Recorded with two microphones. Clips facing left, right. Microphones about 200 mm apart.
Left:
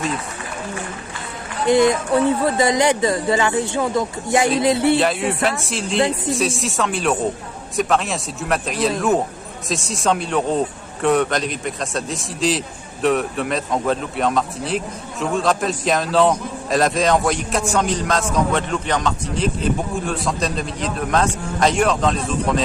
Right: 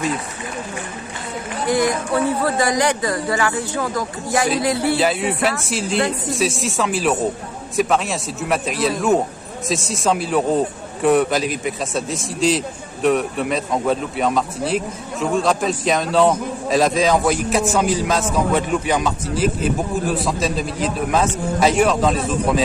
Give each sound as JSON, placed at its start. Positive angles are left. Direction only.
{"t": 1.7, "sound": "speech", "side_deg": 25}
{"t": 4.9, "sound": "a man's voice", "side_deg": 0}